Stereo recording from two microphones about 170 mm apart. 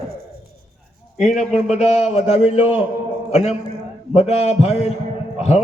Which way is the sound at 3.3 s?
40° left (ahead or behind).